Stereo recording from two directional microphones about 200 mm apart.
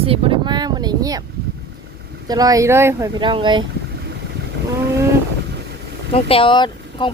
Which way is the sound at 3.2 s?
25° right (ahead or behind).